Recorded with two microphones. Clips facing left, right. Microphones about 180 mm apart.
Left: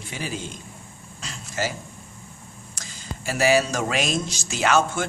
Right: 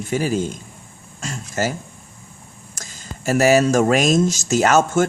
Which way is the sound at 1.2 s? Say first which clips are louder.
Right 5 dB; 45° right (ahead or behind).